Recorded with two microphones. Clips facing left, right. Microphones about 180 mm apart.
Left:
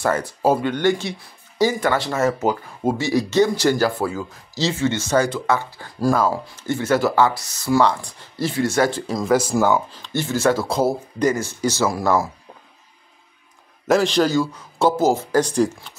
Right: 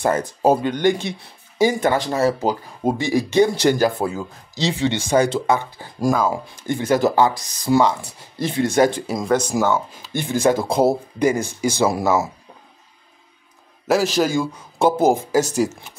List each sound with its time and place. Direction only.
0.0 s speech: 20° right (ahead or behind)
2.1 s speech: 30° right (ahead or behind)
2.8 s speech: 15° right (ahead or behind)
8.4 s speech: 20° right (ahead or behind)
9.2 s speech: 5° left (ahead or behind)
9.9 s speech: 15° right (ahead or behind)
13.8 s a man's voice: 5° right (ahead or behind)